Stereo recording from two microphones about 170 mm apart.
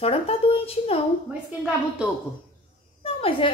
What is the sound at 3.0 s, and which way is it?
Speech, 35° left (ahead or behind).